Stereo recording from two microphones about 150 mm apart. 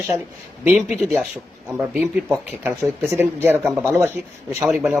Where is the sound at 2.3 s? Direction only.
15° right (ahead or behind).